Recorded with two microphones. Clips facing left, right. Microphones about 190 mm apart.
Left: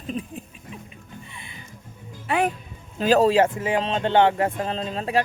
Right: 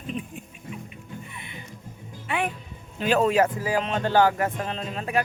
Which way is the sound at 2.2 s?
40° left (ahead or behind).